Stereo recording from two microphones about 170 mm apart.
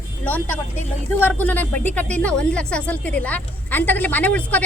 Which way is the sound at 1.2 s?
10° left (ahead or behind).